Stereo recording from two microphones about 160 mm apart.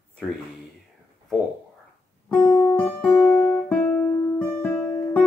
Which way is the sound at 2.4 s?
25° left (ahead or behind).